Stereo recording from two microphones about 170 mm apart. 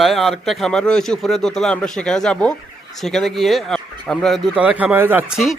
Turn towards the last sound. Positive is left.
turn(degrees=-10)  # may be behind; listen again after turning